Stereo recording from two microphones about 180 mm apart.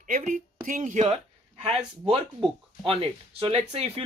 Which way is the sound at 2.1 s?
30° right (ahead or behind).